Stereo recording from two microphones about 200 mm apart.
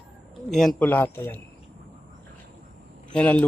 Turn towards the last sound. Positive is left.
turn(degrees=5)  # may be behind; listen again after turning